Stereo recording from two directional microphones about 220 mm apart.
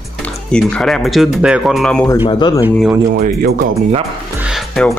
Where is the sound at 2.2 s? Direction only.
20° left (ahead or behind).